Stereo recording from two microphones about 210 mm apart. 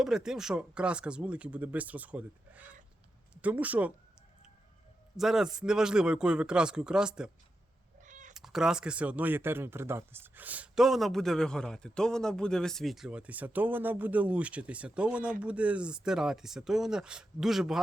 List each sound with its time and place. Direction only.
0.0 s speech: 5° right (ahead or behind)
5.1 s speech: centre (ahead or behind)
8.0 s cat: 35° right (ahead or behind)
8.3 s speech: centre (ahead or behind)